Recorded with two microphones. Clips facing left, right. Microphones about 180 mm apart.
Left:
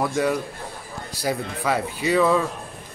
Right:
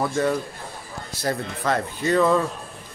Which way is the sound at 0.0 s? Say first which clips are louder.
Even; 10° left (ahead or behind).